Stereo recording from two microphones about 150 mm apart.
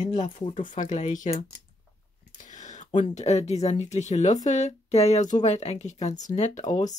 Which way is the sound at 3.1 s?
50° left (ahead or behind).